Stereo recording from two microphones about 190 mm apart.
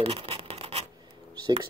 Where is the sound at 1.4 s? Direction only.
25° right (ahead or behind).